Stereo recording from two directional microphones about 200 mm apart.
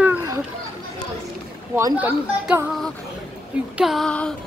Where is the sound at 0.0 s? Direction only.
10° right (ahead or behind).